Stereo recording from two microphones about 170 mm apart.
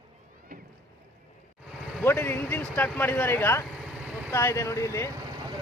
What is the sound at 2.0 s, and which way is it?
Speech, 15° left (ahead or behind).